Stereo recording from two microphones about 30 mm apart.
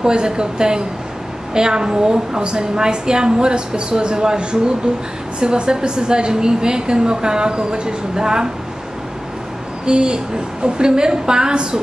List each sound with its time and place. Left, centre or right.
0.0 s a woman's voice: right
9.8 s a woman's voice: right